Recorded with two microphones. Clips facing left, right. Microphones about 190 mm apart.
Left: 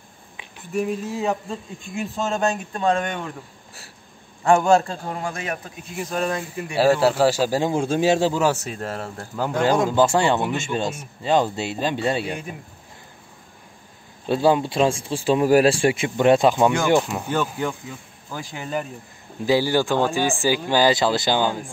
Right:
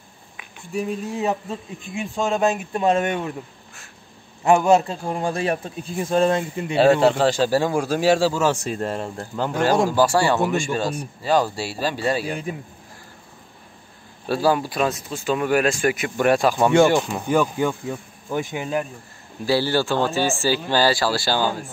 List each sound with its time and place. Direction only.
0.7 s a man's voice: centre (ahead or behind)
2.8 s speech: 25° right (ahead or behind)
4.5 s a man's voice: centre (ahead or behind)
4.8 s speech: 30° right (ahead or behind)
7.0 s speech: 5° left (ahead or behind)
9.6 s speech: 20° left (ahead or behind)
14.2 s speech: 20° left (ahead or behind)
17.3 s speech: 10° right (ahead or behind)
17.8 s speech: 20° right (ahead or behind)
19.4 s speech: 15° left (ahead or behind)